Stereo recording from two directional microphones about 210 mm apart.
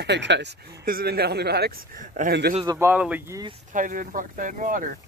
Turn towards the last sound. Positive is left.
turn(degrees=-40)  # may be behind; listen again after turning